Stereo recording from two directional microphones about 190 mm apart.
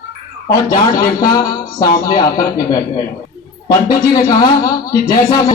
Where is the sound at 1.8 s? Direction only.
20° left (ahead or behind).